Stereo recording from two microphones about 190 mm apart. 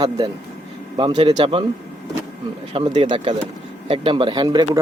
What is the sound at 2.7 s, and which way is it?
Speech, 25° right (ahead or behind).